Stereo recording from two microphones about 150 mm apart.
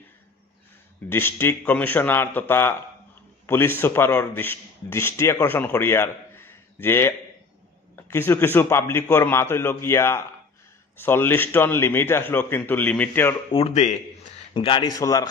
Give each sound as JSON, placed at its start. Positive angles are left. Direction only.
{"t": 1.0, "sound": "a man's voice", "side_deg": 15}
{"t": 7.9, "sound": "a sound", "side_deg": 15}
{"t": 8.5, "sound": "a man's voice", "side_deg": 15}
{"t": 13.5, "sound": "speech", "side_deg": 40}
{"t": 15.0, "sound": "a man's voice", "side_deg": 20}